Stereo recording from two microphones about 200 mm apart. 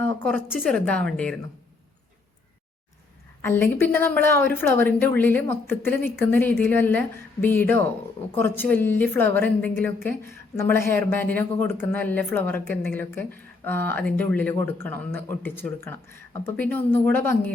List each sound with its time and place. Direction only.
0.0 s a woman's voice: 10° left (ahead or behind)
3.4 s a woman's voice: 10° left (ahead or behind)